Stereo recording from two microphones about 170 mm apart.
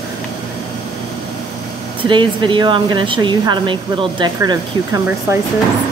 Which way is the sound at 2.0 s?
30° right (ahead or behind).